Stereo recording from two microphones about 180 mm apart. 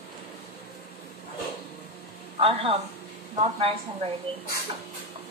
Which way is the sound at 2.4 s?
30° right (ahead or behind).